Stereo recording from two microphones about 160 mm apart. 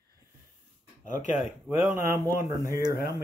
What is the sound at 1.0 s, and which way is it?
Speech, 50° left (ahead or behind).